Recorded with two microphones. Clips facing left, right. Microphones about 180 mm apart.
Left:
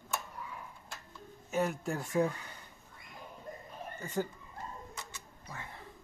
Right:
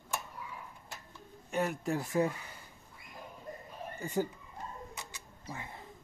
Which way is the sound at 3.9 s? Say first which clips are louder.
Right 2 dB; 10° right (ahead or behind).